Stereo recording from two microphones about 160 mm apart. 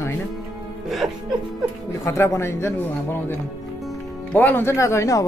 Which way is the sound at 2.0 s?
15° left (ahead or behind).